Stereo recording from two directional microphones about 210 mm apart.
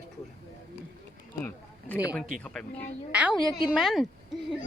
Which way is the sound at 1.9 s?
15° left (ahead or behind).